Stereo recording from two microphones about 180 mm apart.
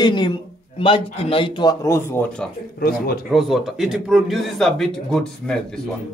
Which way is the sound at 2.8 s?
55° left (ahead or behind).